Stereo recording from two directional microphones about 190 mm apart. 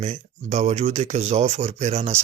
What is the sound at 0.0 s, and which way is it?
Speech, 35° right (ahead or behind).